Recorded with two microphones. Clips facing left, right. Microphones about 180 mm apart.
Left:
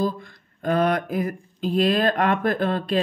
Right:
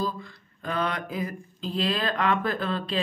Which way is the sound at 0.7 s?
45° left (ahead or behind).